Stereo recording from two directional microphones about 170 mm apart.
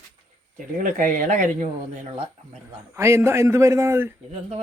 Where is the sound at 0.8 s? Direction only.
50° right (ahead or behind).